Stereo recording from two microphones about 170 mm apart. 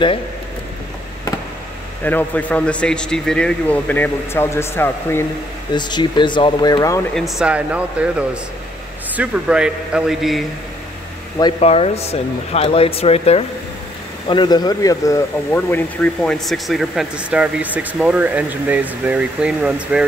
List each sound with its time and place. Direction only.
2.0 s a man's voice: 10° left (ahead or behind)
5.8 s speech: 25° left (ahead or behind)
7.2 s speech: centre (ahead or behind)
11.6 s speech: 40° left (ahead or behind); by 20.1 s 5° right (ahead or behind)